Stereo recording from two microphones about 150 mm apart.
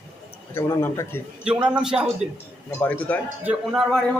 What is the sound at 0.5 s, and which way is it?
Speech, 20° left (ahead or behind).